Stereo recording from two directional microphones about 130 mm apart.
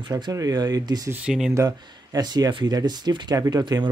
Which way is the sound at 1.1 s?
10° right (ahead or behind).